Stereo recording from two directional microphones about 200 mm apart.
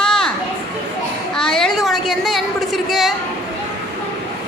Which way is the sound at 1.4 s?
5° left (ahead or behind).